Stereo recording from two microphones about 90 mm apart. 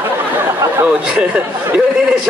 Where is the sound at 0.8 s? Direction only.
10° right (ahead or behind).